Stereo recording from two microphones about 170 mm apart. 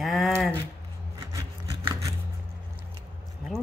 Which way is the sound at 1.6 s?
20° right (ahead or behind).